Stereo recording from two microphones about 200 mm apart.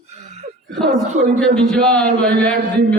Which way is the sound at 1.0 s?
35° right (ahead or behind).